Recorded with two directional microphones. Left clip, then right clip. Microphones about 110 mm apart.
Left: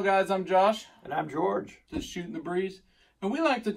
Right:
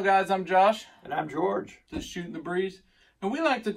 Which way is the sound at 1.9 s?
25° right (ahead or behind).